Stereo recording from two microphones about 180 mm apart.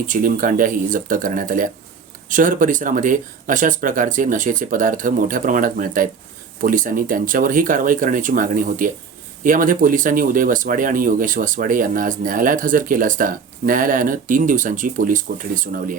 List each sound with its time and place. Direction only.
0.1 s speech: 50° right (ahead or behind)